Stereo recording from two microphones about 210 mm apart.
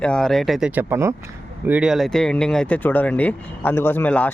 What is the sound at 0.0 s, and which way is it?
Speech, 5° left (ahead or behind).